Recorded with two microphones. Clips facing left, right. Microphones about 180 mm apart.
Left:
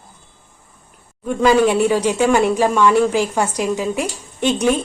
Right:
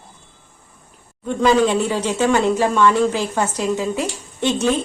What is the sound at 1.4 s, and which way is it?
Speech, 10° left (ahead or behind).